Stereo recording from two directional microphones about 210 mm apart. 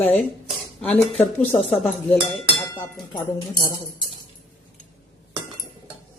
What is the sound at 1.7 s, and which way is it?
Dishes, 5° left (ahead or behind).